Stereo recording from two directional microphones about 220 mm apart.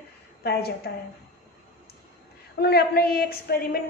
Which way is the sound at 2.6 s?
45° left (ahead or behind).